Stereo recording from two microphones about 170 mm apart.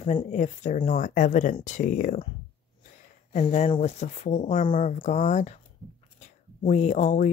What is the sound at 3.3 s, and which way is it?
Speech, 45° left (ahead or behind).